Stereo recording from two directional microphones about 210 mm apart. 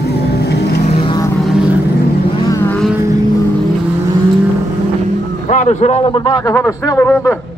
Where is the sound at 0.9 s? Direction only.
20° left (ahead or behind).